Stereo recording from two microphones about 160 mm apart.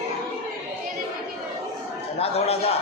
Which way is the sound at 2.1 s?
40° left (ahead or behind).